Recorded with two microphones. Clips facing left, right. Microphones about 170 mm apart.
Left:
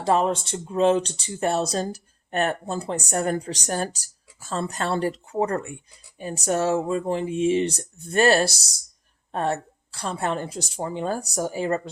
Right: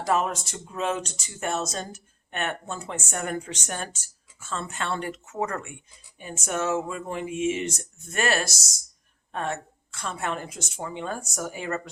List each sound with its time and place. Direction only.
0.0 s speech: 30° left (ahead or behind)